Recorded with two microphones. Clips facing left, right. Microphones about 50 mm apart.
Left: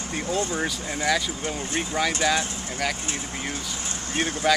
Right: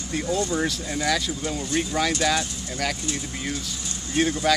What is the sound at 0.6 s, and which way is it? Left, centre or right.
Speech, centre.